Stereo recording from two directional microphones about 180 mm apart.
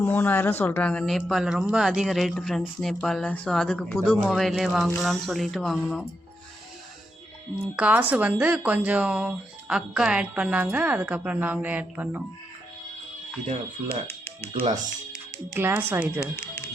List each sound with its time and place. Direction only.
0.0 s speech: 10° left (ahead or behind)
7.8 s speech: 5° right (ahead or behind)
14.5 s speech: 35° right (ahead or behind)
15.5 s speech: 10° right (ahead or behind)
16.2 s speech: 15° left (ahead or behind)